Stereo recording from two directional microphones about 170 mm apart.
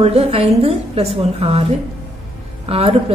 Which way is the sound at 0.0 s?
35° right (ahead or behind).